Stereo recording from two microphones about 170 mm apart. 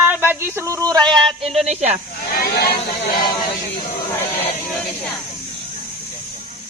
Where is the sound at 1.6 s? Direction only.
40° right (ahead or behind).